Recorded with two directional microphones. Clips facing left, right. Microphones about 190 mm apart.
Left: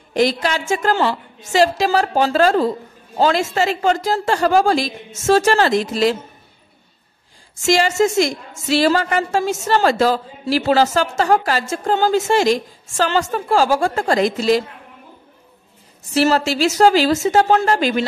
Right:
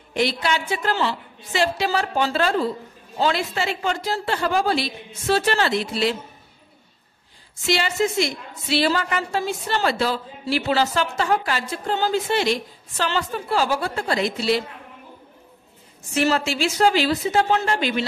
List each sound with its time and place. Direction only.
0.1 s a woman's voice: 40° left (ahead or behind)
7.6 s a woman's voice: 40° left (ahead or behind)
16.1 s a woman's voice: 35° left (ahead or behind)